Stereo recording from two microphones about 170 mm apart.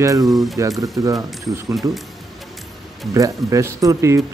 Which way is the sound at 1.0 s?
20° right (ahead or behind).